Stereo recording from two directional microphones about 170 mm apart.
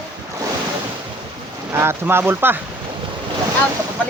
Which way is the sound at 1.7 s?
15° right (ahead or behind).